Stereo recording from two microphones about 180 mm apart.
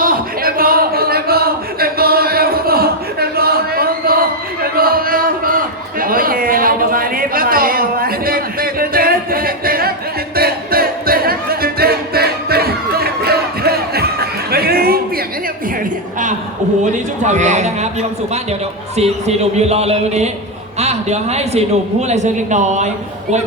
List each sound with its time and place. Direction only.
0.0 s a sound: 55° right (ahead or behind)
10.3 s music: 55° right (ahead or behind)
16.8 s speech: 40° right (ahead or behind)
18.9 s speech: 35° right (ahead or behind)